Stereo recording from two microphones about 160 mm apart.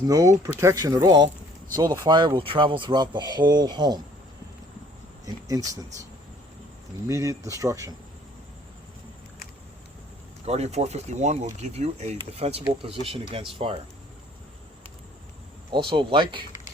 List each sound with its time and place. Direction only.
0.1 s speech: 20° right (ahead or behind)
5.2 s speech: 20° right (ahead or behind)
7.1 s speech: 20° right (ahead or behind)
10.4 s speech: 40° right (ahead or behind)
15.7 s speech: 30° right (ahead or behind)